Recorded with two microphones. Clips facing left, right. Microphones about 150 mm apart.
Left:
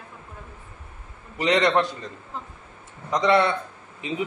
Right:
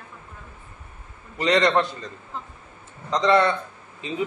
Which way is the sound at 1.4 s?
10° left (ahead or behind).